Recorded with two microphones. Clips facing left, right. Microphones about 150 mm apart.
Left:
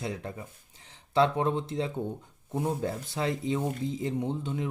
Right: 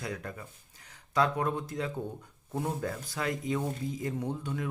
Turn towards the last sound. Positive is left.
turn(degrees=20)  # may be behind; listen again after turning